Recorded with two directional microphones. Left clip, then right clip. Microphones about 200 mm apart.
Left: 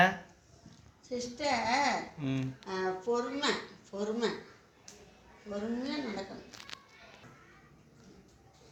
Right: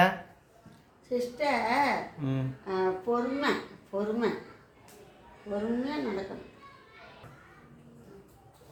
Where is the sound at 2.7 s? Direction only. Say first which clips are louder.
Right 4 dB; 5° right (ahead or behind).